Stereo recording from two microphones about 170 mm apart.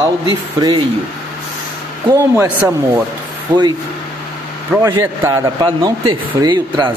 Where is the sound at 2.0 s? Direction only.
15° right (ahead or behind).